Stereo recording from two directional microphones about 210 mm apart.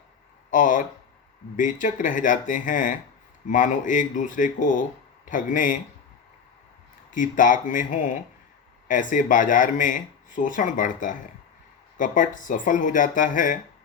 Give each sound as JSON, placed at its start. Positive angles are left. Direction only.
{"t": 0.5, "sound": "speech", "side_deg": 40}
{"t": 7.1, "sound": "speech", "side_deg": 40}